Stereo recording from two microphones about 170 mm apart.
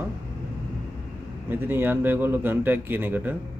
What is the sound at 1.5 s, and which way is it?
Speech, 10° right (ahead or behind).